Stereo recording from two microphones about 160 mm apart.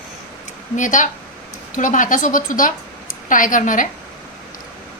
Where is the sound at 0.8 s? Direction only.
50° left (ahead or behind).